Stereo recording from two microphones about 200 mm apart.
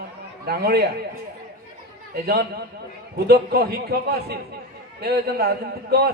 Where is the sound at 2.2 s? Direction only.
50° right (ahead or behind).